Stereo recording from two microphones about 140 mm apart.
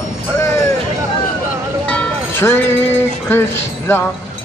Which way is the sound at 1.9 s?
15° left (ahead or behind).